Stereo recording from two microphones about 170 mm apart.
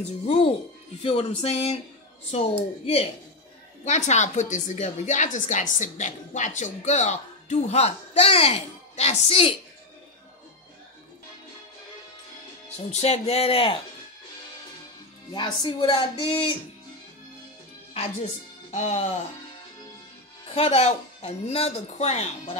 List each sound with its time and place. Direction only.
0.0 s a woman's voice: 40° left (ahead or behind)
12.9 s speech: 40° left (ahead or behind)
15.3 s speech: 30° left (ahead or behind)
18.7 s speech: 40° left (ahead or behind)
20.5 s speech: 35° left (ahead or behind)